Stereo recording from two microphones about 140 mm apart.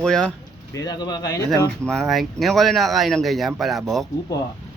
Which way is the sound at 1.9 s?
Centre (ahead or behind).